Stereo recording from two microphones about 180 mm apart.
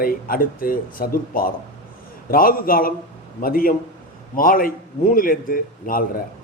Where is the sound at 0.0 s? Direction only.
55° left (ahead or behind).